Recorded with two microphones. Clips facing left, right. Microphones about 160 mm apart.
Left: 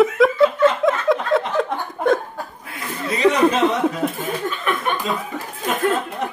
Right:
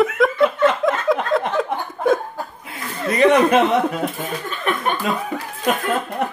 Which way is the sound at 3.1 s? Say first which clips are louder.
Right 2 dB; 60° right (ahead or behind).